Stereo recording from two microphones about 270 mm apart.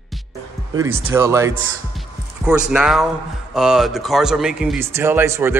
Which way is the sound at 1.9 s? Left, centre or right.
Centre.